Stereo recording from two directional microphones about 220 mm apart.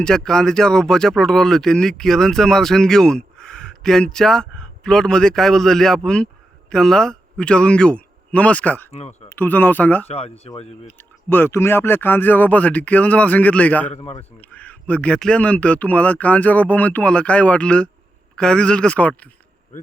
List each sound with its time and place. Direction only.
0.0 s a man's voice: 5° left (ahead or behind)
8.9 s speech: 30° left (ahead or behind)
9.3 s speech: 10° left (ahead or behind)
10.1 s speech: 30° left (ahead or behind)
10.8 s speech: 10° left (ahead or behind)
13.9 s speech: 30° left (ahead or behind)
14.4 s speech: 5° left (ahead or behind)
19.7 s speech: 35° left (ahead or behind)